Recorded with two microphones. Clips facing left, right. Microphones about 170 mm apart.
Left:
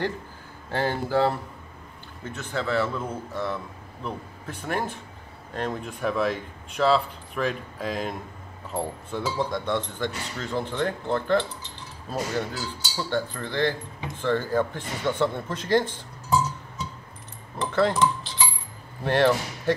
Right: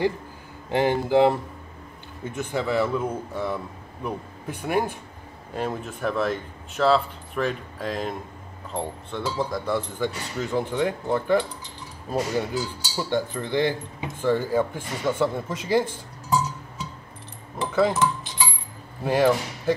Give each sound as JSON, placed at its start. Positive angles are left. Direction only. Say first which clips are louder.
{"t": 0.7, "sound": "cutlery", "louder": "right 5 dB", "side_deg": -15}
{"t": 5.5, "sound": "speech", "louder": "right 1 dB", "side_deg": -5}
{"t": 8.7, "sound": "cutlery", "louder": "left 1 dB", "side_deg": 5}
{"t": 17.6, "sound": "speech", "louder": "right 1 dB", "side_deg": -5}
{"t": 19.0, "sound": "speech", "louder": "right 1 dB", "side_deg": -5}